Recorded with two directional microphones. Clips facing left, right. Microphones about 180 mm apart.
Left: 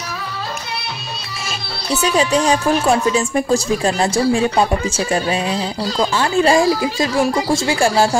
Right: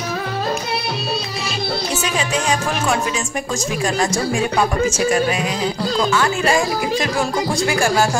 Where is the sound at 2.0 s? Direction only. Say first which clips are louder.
Left 11 dB; 35° left (ahead or behind).